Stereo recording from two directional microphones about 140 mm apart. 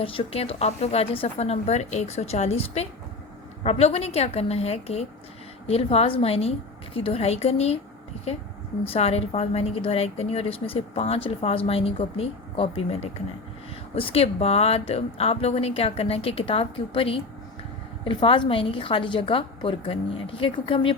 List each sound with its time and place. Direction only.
0.0 s a woman's voice: 40° left (ahead or behind)
8.9 s a woman's voice: 45° left (ahead or behind)